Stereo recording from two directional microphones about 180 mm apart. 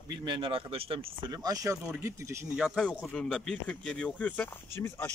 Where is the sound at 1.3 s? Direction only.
20° right (ahead or behind).